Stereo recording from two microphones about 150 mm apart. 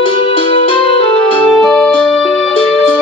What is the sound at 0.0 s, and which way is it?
Music, 35° left (ahead or behind).